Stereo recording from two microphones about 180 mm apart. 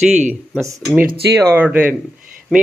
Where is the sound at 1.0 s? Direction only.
65° right (ahead or behind).